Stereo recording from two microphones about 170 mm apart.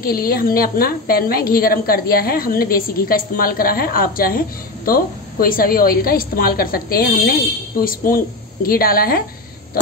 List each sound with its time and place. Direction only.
0.0 s a woman's voice: 60° left (ahead or behind)